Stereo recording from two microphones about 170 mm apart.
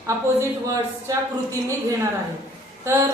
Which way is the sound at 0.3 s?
20° right (ahead or behind).